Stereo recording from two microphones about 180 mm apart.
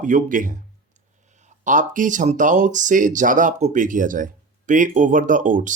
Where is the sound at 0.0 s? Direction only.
45° right (ahead or behind).